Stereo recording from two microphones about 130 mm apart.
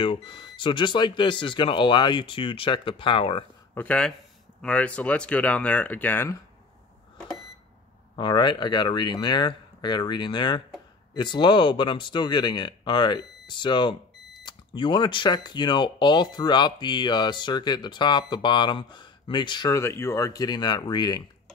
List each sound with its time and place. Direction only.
0.0 s speech: 40° left (ahead or behind)
3.7 s speech: 10° left (ahead or behind)
8.2 s speech: 35° left (ahead or behind)
19.8 s speech: 20° left (ahead or behind)